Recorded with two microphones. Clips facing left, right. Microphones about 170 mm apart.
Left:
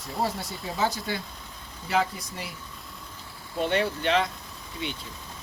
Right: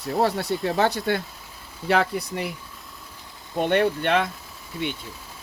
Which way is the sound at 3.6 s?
55° right (ahead or behind).